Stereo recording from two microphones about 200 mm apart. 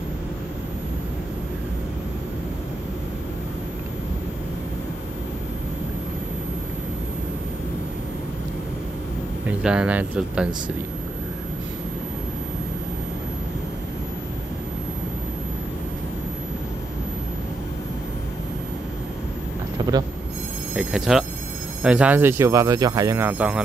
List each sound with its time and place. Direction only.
9.5 s speech: 5° right (ahead or behind)
19.8 s vehicle: 20° right (ahead or behind)
20.7 s speech: centre (ahead or behind)